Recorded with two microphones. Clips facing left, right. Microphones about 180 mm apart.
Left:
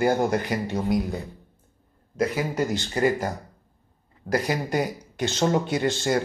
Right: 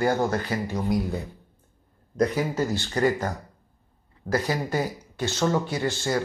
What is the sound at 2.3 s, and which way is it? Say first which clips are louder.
Speech: even; 15° left (ahead or behind).